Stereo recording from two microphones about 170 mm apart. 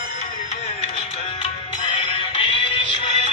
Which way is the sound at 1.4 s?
30° left (ahead or behind).